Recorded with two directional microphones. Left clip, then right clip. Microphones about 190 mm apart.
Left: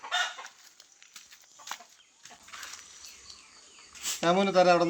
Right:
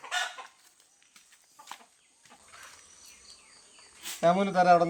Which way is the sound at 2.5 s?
50° left (ahead or behind).